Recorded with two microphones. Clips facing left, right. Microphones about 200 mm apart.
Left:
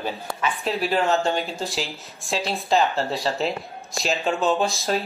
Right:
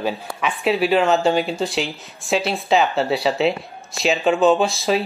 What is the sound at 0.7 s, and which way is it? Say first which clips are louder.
Speech: right 5 dB; centre (ahead or behind).